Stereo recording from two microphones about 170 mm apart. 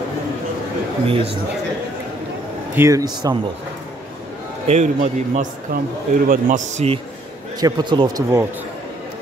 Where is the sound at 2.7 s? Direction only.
15° right (ahead or behind).